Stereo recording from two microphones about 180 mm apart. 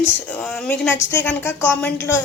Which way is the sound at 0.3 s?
5° left (ahead or behind).